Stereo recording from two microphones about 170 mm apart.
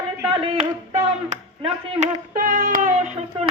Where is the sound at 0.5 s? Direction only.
40° right (ahead or behind).